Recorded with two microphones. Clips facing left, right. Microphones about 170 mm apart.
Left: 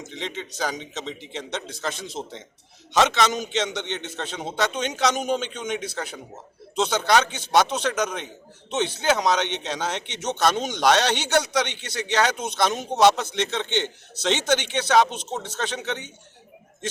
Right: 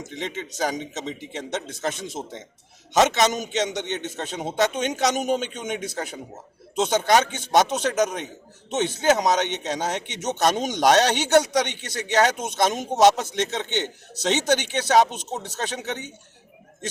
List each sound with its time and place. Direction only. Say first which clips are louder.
0.1 s a man's voice: right 1 dB; 45° right (ahead or behind)